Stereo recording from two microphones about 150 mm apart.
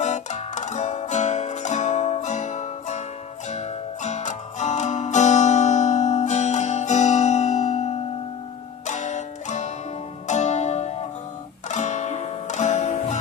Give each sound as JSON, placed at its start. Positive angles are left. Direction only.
{"t": 0.0, "sound": "music", "side_deg": 50}